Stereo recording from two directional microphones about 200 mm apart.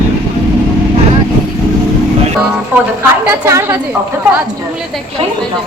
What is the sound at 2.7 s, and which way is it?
Speech, 10° right (ahead or behind).